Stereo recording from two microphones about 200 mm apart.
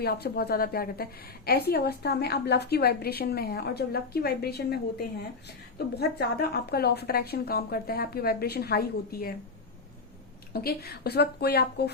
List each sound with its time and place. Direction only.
0.0 s a woman's voice: 50° left (ahead or behind)
10.5 s a woman's voice: 50° left (ahead or behind)